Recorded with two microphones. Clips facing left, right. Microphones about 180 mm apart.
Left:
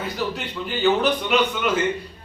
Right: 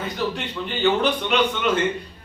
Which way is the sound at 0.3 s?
5° left (ahead or behind).